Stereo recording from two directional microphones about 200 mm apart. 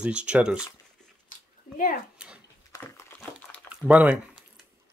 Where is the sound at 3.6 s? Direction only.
5° right (ahead or behind).